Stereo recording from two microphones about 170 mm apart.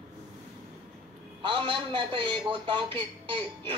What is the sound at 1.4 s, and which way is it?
A man's voice, 30° right (ahead or behind).